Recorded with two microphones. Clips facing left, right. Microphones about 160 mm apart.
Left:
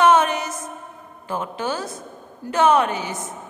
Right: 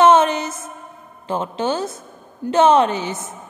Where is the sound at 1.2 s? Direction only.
25° right (ahead or behind).